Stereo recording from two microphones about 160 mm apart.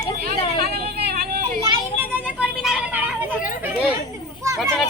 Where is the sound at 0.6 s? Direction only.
85° right.